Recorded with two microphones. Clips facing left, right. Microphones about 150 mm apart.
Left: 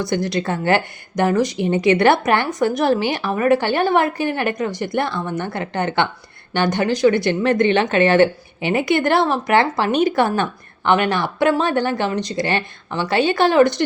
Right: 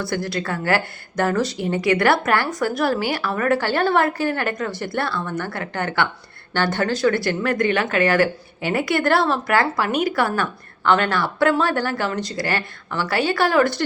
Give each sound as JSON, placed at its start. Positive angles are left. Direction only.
{"t": 0.0, "sound": "speech", "side_deg": 20}